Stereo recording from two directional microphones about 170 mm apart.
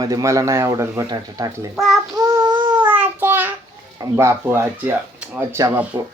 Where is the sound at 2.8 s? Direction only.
10° right (ahead or behind).